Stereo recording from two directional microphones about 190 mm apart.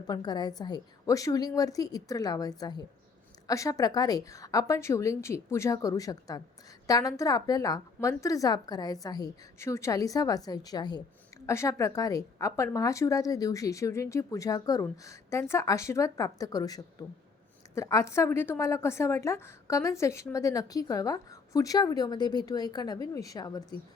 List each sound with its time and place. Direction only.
0.1 s a woman's voice: 20° left (ahead or behind)